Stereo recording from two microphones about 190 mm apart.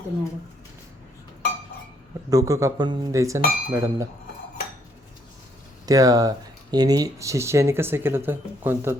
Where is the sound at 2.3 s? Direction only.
15° right (ahead or behind).